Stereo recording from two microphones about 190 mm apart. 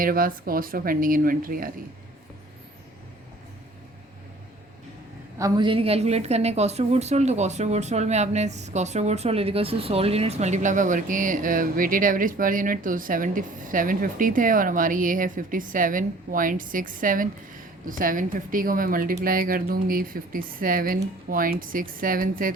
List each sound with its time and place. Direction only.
0.0 s a woman's voice: 50° right (ahead or behind)
5.4 s a woman's voice: 25° right (ahead or behind); by 22.5 s 45° right (ahead or behind)